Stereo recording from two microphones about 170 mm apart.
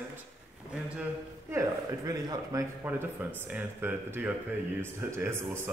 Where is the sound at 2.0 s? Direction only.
20° right (ahead or behind).